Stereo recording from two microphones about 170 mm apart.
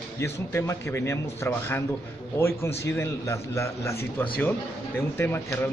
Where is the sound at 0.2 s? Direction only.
15° left (ahead or behind).